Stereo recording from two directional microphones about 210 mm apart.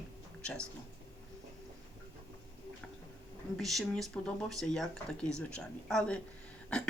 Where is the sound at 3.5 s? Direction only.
Centre (ahead or behind).